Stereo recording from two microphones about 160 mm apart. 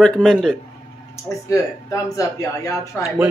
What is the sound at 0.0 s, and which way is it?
Speech, 5° left (ahead or behind).